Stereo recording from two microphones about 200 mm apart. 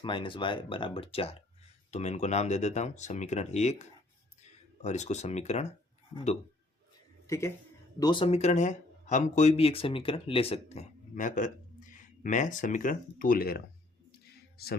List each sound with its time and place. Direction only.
0.0 s speech: 25° left (ahead or behind)
7.3 s speech: 15° left (ahead or behind); by 13.6 s 45° left (ahead or behind)